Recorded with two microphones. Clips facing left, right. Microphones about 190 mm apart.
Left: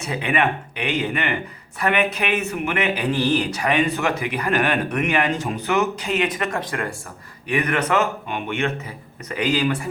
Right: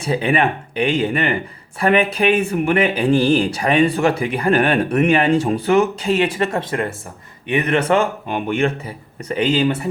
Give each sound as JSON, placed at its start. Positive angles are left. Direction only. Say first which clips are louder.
{"t": 0.0, "sound": "speech", "louder": "right 4 dB", "side_deg": -30}
{"t": 9.3, "sound": "speech", "louder": "right 4 dB", "side_deg": -25}